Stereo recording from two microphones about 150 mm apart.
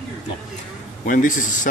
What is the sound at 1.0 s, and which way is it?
Speech, 60° left (ahead or behind).